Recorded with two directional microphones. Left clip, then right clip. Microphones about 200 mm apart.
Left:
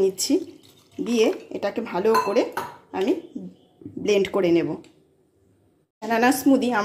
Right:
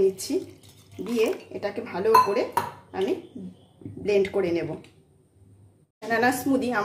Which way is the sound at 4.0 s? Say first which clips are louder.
Left 2 dB; 40° left (ahead or behind).